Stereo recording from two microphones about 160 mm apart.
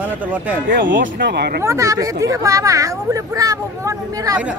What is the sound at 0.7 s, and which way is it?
Speech, 80° right.